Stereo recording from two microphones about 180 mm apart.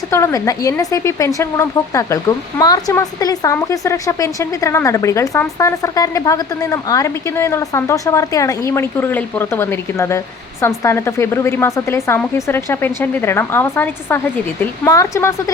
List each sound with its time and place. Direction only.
0.1 s a woman's voice: 15° left (ahead or behind)